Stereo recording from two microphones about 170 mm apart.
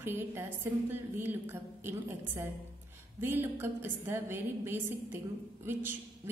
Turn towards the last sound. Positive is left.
turn(degrees=-15)  # may be behind; listen again after turning